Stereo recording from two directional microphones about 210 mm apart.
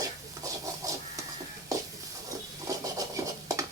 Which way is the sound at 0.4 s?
15° right (ahead or behind).